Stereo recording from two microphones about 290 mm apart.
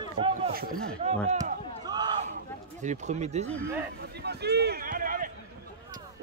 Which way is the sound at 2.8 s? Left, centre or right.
Right.